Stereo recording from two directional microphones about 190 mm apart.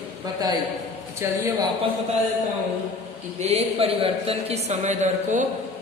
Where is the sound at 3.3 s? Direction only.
35° right (ahead or behind).